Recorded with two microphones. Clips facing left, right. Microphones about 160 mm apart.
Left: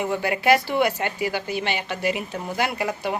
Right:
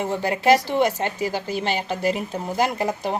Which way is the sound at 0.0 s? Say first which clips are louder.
Right 1 dB; 40° right (ahead or behind).